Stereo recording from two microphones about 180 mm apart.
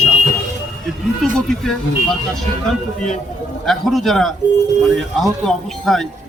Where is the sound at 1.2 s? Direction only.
Centre (ahead or behind).